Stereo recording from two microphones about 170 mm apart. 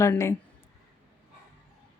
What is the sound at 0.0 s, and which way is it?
Speech, 15° left (ahead or behind).